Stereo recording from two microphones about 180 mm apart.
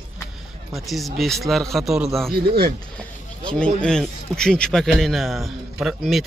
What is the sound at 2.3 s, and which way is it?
Speech, 60° right (ahead or behind).